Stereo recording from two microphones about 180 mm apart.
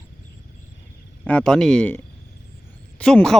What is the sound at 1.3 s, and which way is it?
Speech, 5° left (ahead or behind).